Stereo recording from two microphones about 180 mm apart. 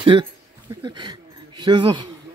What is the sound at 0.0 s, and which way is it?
A man's voice, 30° right (ahead or behind).